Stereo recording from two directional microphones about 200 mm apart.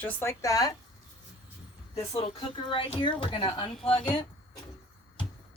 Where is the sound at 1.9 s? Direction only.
15° left (ahead or behind).